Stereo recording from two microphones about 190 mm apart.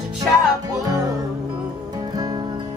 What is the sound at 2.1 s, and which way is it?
Music, 20° right (ahead or behind).